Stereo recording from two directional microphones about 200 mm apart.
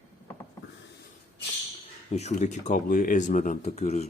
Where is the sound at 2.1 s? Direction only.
35° left (ahead or behind).